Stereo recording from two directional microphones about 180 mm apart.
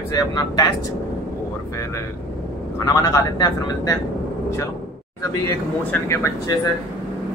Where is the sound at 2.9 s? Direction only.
20° left (ahead or behind).